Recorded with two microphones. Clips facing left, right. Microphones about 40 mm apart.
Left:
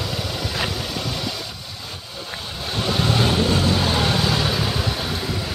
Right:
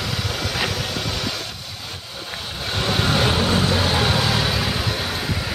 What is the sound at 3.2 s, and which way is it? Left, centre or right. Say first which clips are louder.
Vehicle: even; centre.